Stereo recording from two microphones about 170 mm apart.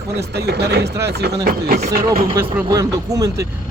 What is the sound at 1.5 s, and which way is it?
Speech, 60° right (ahead or behind).